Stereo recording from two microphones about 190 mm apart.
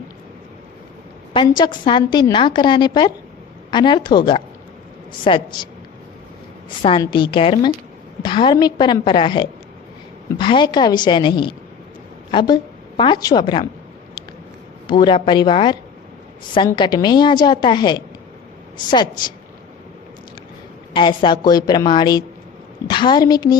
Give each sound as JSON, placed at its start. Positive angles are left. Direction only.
{"t": 1.3, "sound": "a woman's voice", "side_deg": 25}
{"t": 7.0, "sound": "a woman's voice", "side_deg": 25}
{"t": 14.8, "sound": "a woman's voice", "side_deg": 25}
{"t": 20.9, "sound": "a woman's voice", "side_deg": 25}